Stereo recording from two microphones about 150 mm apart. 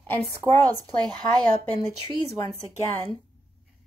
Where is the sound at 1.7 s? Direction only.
30° left (ahead or behind).